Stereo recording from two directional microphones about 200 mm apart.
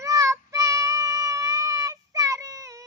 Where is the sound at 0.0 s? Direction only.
15° right (ahead or behind).